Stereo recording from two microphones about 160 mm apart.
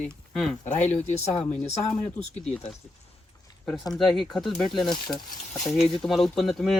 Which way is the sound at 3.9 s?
Centre (ahead or behind).